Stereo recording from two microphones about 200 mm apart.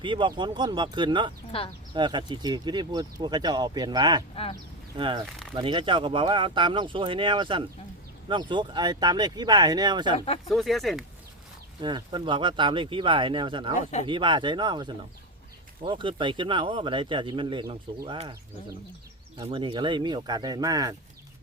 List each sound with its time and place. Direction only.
0.0 s speech: 25° right (ahead or behind)
1.5 s speech: 30° left (ahead or behind)
1.9 s speech: 25° right (ahead or behind)
5.2 s speech: centre (ahead or behind)
5.5 s speech: 25° right (ahead or behind)
10.5 s speech: centre (ahead or behind)
11.8 s speech: 25° right (ahead or behind)
19.4 s speech: 25° right (ahead or behind)